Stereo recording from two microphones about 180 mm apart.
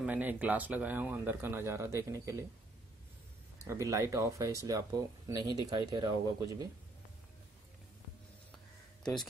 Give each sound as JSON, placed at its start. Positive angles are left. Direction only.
{"t": 0.0, "sound": "speech", "side_deg": -10}
{"t": 3.6, "sound": "speech", "side_deg": -15}